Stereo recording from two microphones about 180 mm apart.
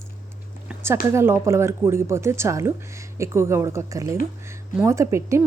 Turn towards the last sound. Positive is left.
turn(degrees=-15)  # may be behind; listen again after turning